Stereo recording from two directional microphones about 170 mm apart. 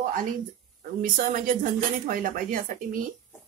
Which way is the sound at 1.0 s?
55° right (ahead or behind).